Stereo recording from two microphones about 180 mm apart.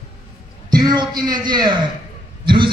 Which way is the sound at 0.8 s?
25° right (ahead or behind).